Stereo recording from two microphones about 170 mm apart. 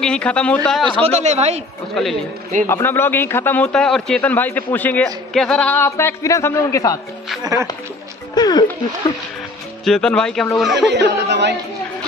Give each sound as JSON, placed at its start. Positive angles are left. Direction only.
{"t": 0.0, "sound": "a man's voice", "side_deg": 5}
{"t": 1.0, "sound": "speech", "side_deg": -40}
{"t": 2.0, "sound": "speech", "side_deg": 5}
{"t": 2.6, "sound": "a man's voice", "side_deg": 15}
{"t": 8.4, "sound": "speech", "side_deg": 25}
{"t": 9.8, "sound": "speech", "side_deg": 5}
{"t": 10.9, "sound": "speech", "side_deg": -85}